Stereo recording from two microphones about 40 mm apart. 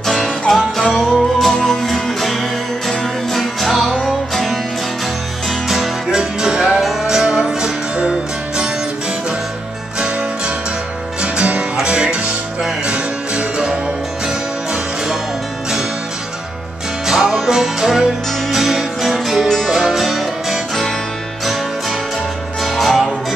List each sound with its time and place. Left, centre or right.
0.0 s music: centre
3.3 s music: centre
5.7 s music: centre
6.1 s music: centre
6.8 s music: centre
7.1 s music: centre
11.1 s music: right
17.0 s music: centre
22.6 s music: centre